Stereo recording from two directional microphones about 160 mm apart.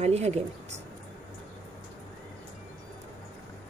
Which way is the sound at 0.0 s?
40° right (ahead or behind).